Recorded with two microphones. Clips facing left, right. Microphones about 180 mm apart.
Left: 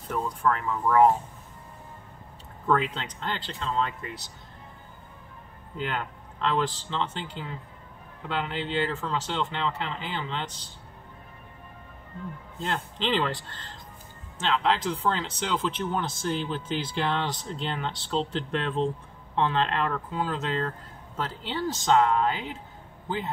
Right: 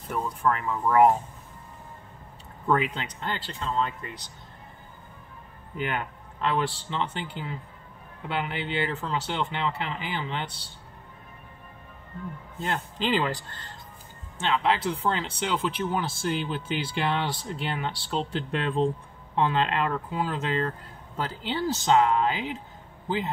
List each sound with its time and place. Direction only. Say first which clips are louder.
0.1 s speech: even; 5° right (ahead or behind)
2.6 s speech: even; 10° right (ahead or behind)
5.9 s speech: right 1 dB; 10° right (ahead or behind)
12.6 s speech: right 1 dB; 5° right (ahead or behind)
14.5 s a man's voice: even; 5° right (ahead or behind)